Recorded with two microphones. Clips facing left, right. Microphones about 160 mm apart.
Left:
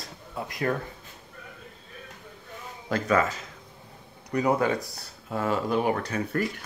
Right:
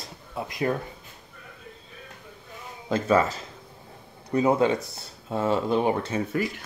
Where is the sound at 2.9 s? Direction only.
30° right (ahead or behind).